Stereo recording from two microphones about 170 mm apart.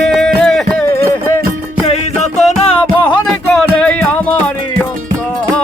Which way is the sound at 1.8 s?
40° left (ahead or behind).